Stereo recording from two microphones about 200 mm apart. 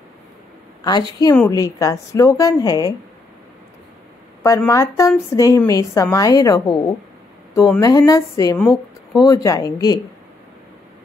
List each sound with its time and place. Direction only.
0.8 s a woman's voice: 20° left (ahead or behind)
4.4 s speech: 15° left (ahead or behind)
7.8 s speech: 15° left (ahead or behind)
8.5 s speech: 5° left (ahead or behind)
9.2 s a woman's voice: 15° left (ahead or behind)